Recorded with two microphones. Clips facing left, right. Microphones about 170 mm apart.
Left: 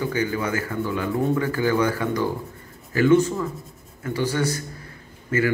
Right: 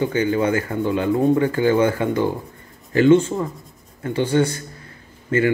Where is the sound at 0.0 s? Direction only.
25° right (ahead or behind).